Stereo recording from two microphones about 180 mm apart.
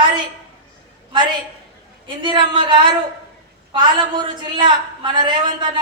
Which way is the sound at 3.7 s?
25° right (ahead or behind).